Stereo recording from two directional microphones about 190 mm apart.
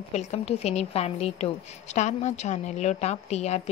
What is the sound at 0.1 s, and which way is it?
A woman's voice, 35° left (ahead or behind).